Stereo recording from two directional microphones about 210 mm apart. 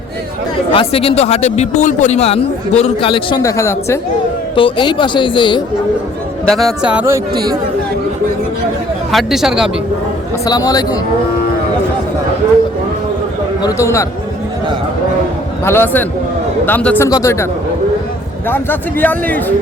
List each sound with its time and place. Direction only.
0.7 s speech: 25° left (ahead or behind)
4.5 s speech: 25° left (ahead or behind)
6.5 s speech: centre (ahead or behind); by 7.5 s 15° right (ahead or behind)
9.1 s speech: centre (ahead or behind)
10.4 s a man's voice: 20° left (ahead or behind)
13.6 s a man's voice: 15° left (ahead or behind)
15.6 s a man's voice: 10° left (ahead or behind)
18.4 s a man's voice: 10° left (ahead or behind)